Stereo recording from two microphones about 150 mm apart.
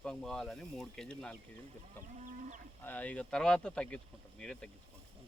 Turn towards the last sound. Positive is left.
turn(degrees=5)  # may be behind; listen again after turning